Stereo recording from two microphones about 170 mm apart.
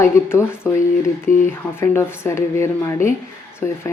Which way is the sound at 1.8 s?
15° left (ahead or behind).